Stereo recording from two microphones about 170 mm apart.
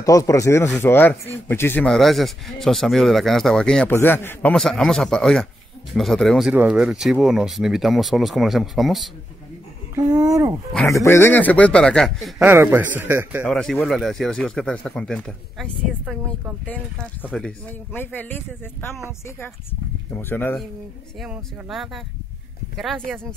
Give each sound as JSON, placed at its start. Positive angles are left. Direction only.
{"t": 0.0, "sound": "speech", "side_deg": 20}
{"t": 9.9, "sound": "speech", "side_deg": -20}
{"t": 10.9, "sound": "speech", "side_deg": 15}
{"t": 12.4, "sound": "speech", "side_deg": -10}
{"t": 13.5, "sound": "speech", "side_deg": 5}
{"t": 21.2, "sound": "speech", "side_deg": 0}
{"t": 23.1, "sound": "speech", "side_deg": 5}